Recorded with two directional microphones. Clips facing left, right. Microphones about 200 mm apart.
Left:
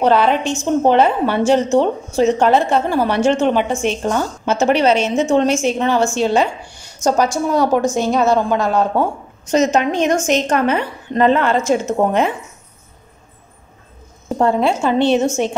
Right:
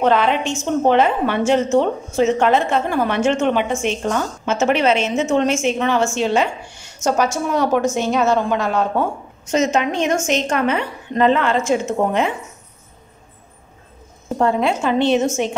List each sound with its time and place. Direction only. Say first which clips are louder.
0.0 s a woman's voice: left 2 dB; 35° left (ahead or behind)
14.4 s a woman's voice: left 2 dB; 30° left (ahead or behind)